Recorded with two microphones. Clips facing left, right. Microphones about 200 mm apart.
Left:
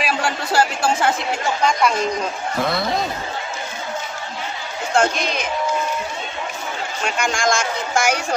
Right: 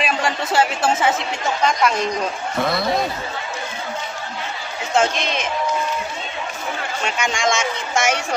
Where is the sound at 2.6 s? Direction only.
Centre (ahead or behind).